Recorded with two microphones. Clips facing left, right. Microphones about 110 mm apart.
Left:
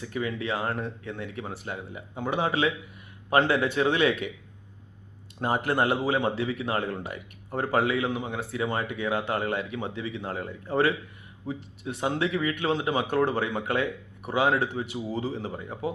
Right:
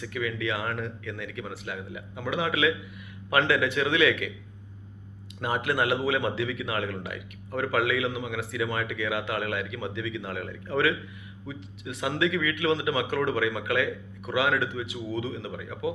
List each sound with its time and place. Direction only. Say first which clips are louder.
0.0 s speech: even; 35° left (ahead or behind)
5.4 s speech: left 2 dB; 35° left (ahead or behind)
11.9 s speech: even; 35° left (ahead or behind)